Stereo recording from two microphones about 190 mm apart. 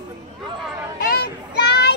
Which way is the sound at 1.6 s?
60° left (ahead or behind).